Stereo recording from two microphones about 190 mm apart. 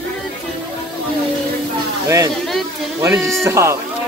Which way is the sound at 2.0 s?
15° right (ahead or behind).